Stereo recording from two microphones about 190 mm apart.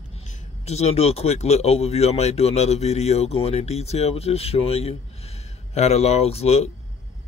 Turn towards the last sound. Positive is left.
turn(degrees=35)  # may be behind; listen again after turning